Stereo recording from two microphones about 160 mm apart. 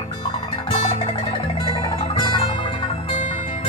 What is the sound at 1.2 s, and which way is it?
Music, 35° left (ahead or behind).